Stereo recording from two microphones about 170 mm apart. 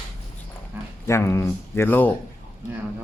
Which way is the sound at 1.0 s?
15° left (ahead or behind).